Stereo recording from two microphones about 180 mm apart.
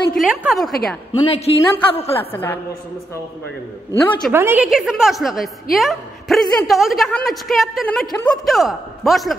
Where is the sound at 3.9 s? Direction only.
10° left (ahead or behind).